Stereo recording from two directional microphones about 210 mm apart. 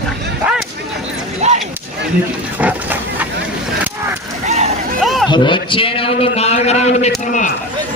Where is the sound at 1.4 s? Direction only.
30° right (ahead or behind).